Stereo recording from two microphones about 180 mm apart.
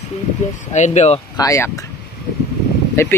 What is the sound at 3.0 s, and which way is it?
Speech, 15° left (ahead or behind).